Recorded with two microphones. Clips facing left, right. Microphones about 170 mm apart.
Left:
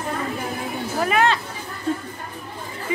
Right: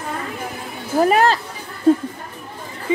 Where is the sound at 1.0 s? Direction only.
40° right (ahead or behind).